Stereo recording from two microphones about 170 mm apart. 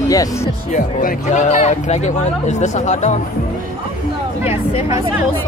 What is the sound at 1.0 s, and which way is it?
Speech, 45° left (ahead or behind).